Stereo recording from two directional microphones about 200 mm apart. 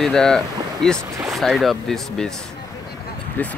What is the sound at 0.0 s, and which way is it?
Speech, centre (ahead or behind).